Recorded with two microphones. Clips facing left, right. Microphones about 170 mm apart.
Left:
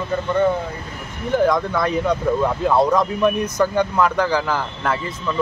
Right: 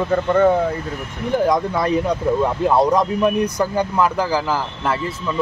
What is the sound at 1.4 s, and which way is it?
Speech, 10° right (ahead or behind).